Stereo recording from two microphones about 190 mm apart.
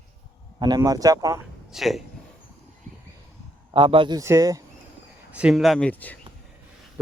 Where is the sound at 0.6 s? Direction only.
20° right (ahead or behind).